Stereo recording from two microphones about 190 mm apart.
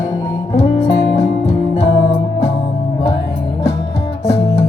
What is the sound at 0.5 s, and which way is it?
Music, 35° left (ahead or behind).